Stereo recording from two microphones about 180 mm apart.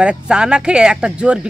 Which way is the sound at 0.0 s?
5° right (ahead or behind).